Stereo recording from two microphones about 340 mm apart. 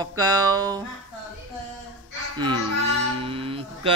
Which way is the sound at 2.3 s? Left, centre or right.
Centre.